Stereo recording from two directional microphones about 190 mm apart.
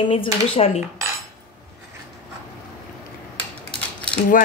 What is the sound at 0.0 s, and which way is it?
Speech, 30° left (ahead or behind).